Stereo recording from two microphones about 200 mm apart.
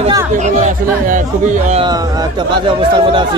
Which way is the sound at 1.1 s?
40° right (ahead or behind).